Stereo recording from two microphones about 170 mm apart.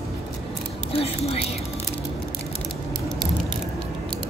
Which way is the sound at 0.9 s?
35° left (ahead or behind).